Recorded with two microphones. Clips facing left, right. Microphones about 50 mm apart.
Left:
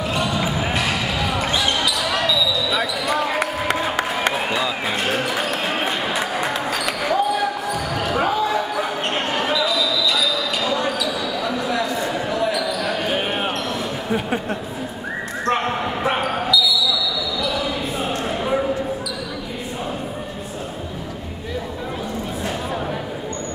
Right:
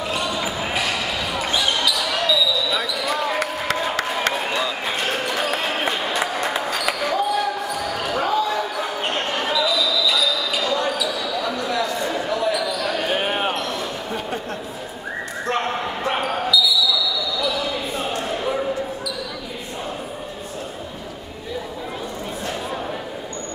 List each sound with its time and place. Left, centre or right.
0.1 s basketball bounce: centre
15.5 s basketball bounce: centre